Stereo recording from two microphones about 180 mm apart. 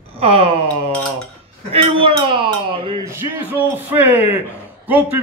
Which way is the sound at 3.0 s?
15° right (ahead or behind).